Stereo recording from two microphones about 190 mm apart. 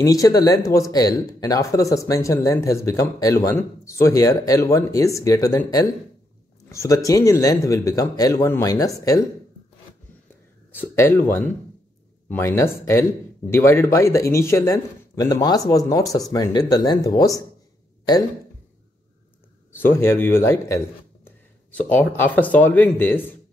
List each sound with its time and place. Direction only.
0.0 s speech: 20° left (ahead or behind)
10.7 s speech: 10° left (ahead or behind)
19.7 s speech: 10° left (ahead or behind)